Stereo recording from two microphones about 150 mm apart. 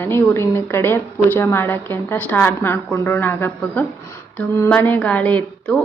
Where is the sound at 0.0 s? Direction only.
15° left (ahead or behind).